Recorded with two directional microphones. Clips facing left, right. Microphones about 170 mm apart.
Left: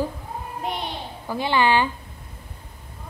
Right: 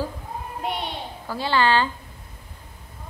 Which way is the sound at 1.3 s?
15° left (ahead or behind).